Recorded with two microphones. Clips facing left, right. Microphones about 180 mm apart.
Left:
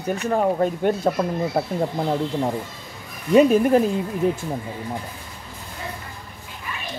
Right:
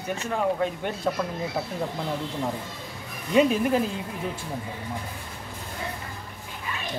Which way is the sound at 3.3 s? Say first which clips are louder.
Left 6 dB; 45° left (ahead or behind).